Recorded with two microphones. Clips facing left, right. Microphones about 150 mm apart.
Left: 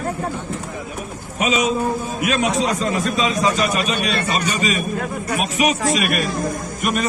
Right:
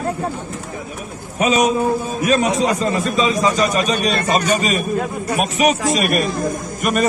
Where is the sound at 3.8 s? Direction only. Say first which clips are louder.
Right 3 dB; 40° right (ahead or behind).